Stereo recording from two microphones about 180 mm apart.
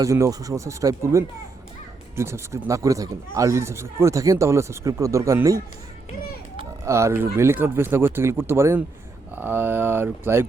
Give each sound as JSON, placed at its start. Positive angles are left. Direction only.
{"t": 0.0, "sound": "speech", "side_deg": -15}
{"t": 6.8, "sound": "speech", "side_deg": -15}